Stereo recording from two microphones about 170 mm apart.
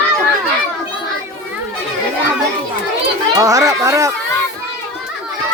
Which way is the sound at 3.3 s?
20° right (ahead or behind).